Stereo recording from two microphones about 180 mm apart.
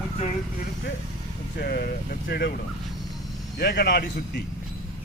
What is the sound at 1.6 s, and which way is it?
Speech, 60° left (ahead or behind).